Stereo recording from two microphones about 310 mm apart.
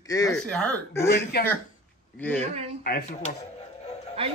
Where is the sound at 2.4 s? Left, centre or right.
Right.